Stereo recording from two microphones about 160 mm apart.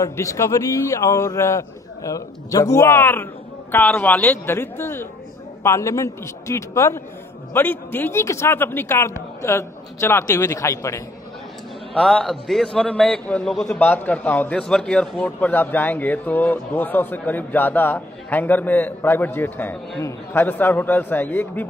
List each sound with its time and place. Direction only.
0.0 s a man's voice: 20° left (ahead or behind)
11.9 s a man's voice: 5° left (ahead or behind)